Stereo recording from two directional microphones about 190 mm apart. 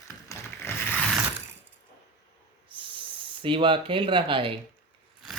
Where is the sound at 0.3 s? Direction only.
10° left (ahead or behind).